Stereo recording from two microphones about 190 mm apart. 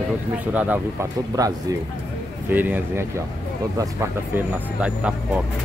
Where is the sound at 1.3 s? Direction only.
20° right (ahead or behind).